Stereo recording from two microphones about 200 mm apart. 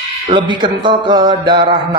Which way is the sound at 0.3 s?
25° right (ahead or behind).